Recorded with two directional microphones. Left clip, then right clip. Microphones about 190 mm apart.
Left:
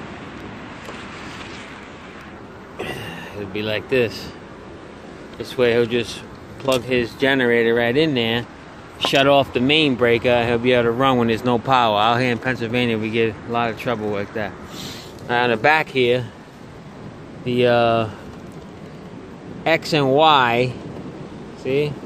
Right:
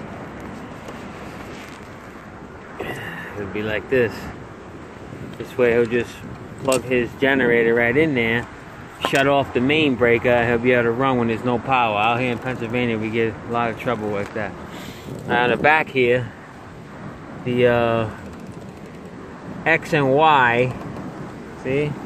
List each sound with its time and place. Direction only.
2.8 s vehicle: 20° left (ahead or behind)
5.6 s speech: 20° left (ahead or behind); by 12.8 s 35° left (ahead or behind)
12.8 s speech: 20° left (ahead or behind)
17.5 s speech: 15° left (ahead or behind)
19.6 s speech: 15° left (ahead or behind)